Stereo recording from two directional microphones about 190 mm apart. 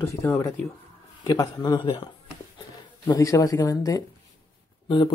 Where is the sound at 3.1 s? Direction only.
15° left (ahead or behind).